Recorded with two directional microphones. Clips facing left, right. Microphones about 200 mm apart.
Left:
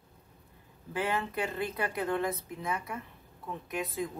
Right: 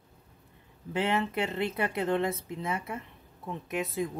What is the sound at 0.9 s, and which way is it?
Speech, 25° right (ahead or behind).